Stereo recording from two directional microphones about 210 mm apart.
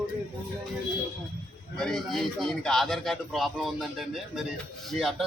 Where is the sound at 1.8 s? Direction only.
Centre (ahead or behind).